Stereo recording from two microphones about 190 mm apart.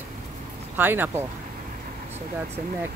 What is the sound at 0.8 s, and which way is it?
Speech, 10° right (ahead or behind).